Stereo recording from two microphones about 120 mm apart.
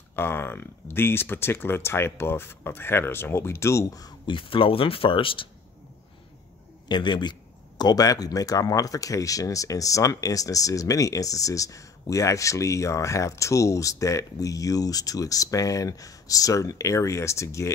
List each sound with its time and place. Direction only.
0.1 s a man's voice: 20° left (ahead or behind)
4.4 s speech: 45° left (ahead or behind)
6.9 s a man's voice: 40° left (ahead or behind); by 17.7 s 25° left (ahead or behind)